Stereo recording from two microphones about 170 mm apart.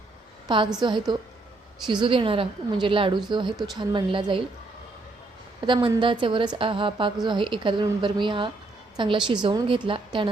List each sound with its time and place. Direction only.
0.4 s a woman's voice: 30° right (ahead or behind)
5.5 s a woman's voice: 30° right (ahead or behind)